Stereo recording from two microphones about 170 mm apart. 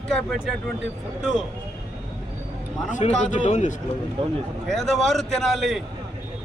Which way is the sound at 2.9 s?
45° left (ahead or behind).